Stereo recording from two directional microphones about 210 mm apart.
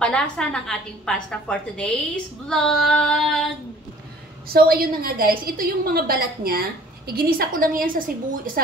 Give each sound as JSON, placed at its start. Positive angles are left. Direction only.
{"t": 0.0, "sound": "a woman's voice", "side_deg": 5}
{"t": 4.5, "sound": "a woman's voice", "side_deg": -45}